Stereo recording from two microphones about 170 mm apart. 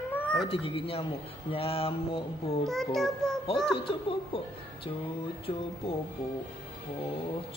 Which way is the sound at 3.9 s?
30° left (ahead or behind).